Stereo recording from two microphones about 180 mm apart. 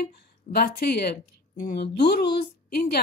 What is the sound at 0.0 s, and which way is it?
Speech, 60° left (ahead or behind).